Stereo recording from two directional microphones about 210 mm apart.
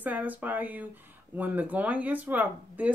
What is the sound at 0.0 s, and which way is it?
Speech, 10° right (ahead or behind).